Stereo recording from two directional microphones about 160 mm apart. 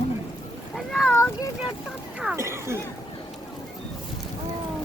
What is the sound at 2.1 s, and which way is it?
Speech, 5° right (ahead or behind).